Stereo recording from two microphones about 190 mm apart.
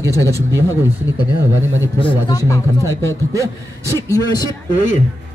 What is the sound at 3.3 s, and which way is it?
Speech, 15° right (ahead or behind).